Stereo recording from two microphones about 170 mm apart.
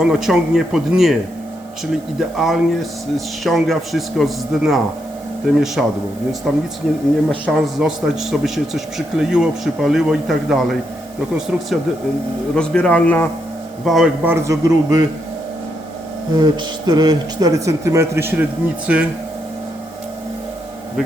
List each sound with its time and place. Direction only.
0.0 s a man's voice: 5° right (ahead or behind)
2.3 s a man's voice: centre (ahead or behind)
13.8 s a man's voice: centre (ahead or behind)
14.3 s a man's voice: 15° right (ahead or behind)
16.3 s a man's voice: 25° right (ahead or behind); by 19.0 s 5° right (ahead or behind)